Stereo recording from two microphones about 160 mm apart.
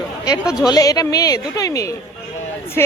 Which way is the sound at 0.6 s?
25° left (ahead or behind).